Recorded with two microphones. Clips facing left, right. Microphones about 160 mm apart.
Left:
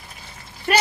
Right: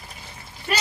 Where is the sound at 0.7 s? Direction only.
65° left (ahead or behind).